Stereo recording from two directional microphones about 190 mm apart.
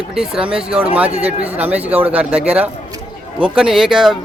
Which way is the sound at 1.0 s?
30° right (ahead or behind).